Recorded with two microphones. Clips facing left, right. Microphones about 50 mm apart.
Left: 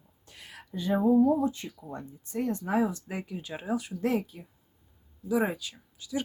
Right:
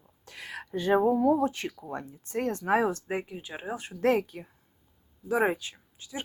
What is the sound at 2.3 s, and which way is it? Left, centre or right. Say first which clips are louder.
Speech: right 3 dB; right.